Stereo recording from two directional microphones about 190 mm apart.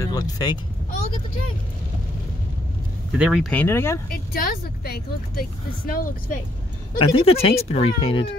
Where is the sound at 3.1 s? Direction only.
5° right (ahead or behind).